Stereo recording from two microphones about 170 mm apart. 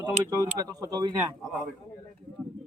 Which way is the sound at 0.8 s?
25° right (ahead or behind).